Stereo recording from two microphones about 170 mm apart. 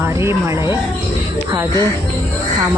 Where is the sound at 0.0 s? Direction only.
15° right (ahead or behind).